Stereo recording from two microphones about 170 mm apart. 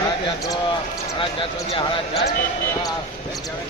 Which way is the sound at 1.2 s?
30° left (ahead or behind).